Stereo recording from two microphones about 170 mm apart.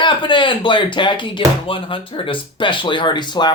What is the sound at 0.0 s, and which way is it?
Speech, 30° left (ahead or behind).